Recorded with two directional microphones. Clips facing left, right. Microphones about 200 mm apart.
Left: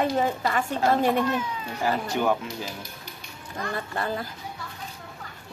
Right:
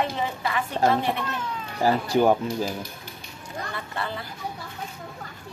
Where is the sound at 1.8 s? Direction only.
35° right (ahead or behind).